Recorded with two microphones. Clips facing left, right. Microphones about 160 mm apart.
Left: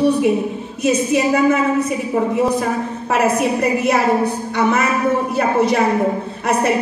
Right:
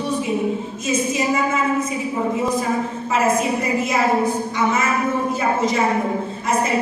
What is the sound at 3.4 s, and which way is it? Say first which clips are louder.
A woman's voice: left 3 dB; 65° left (ahead or behind).